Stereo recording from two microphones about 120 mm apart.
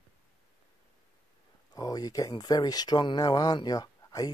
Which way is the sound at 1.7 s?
35° left (ahead or behind).